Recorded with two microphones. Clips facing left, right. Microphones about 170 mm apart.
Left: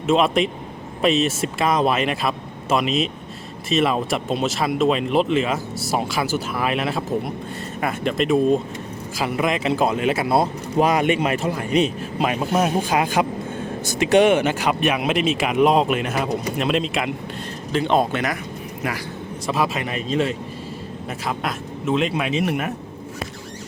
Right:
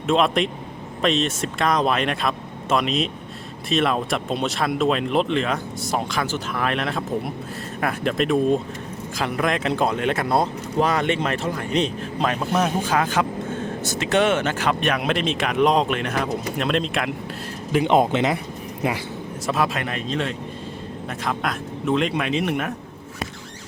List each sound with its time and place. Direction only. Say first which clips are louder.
0.1 s speech: left 2 dB; centre (ahead or behind)
17.7 s speech: right 2 dB; 15° right (ahead or behind)
19.5 s speech: left 1 dB; centre (ahead or behind)